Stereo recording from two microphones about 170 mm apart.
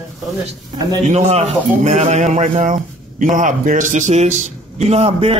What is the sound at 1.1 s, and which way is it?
A man's voice, 40° right (ahead or behind).